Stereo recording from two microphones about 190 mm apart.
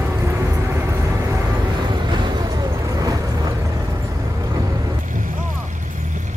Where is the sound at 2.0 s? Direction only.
20° right (ahead or behind).